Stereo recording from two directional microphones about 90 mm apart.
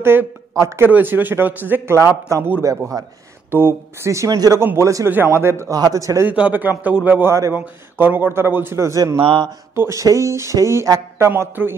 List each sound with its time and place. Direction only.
0.0 s a man's voice: 25° right (ahead or behind)
3.5 s speech: 30° right (ahead or behind)
4.6 s a man's voice: 30° right (ahead or behind)
5.8 s speech: 40° right (ahead or behind)
6.2 s a man's voice: 15° right (ahead or behind); by 9.0 s 30° right (ahead or behind)
9.2 s speech: 80° right
9.8 s speech: 35° right (ahead or behind)